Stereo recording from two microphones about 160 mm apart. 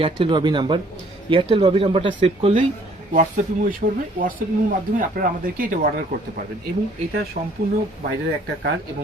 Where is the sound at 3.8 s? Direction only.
60° right (ahead or behind).